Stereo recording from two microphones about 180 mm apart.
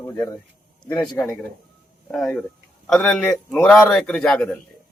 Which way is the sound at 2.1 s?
5° left (ahead or behind).